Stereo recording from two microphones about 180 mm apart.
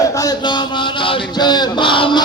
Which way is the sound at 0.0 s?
20° left (ahead or behind).